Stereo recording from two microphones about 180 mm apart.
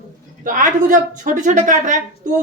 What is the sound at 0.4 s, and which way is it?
A woman's voice, 50° right (ahead or behind).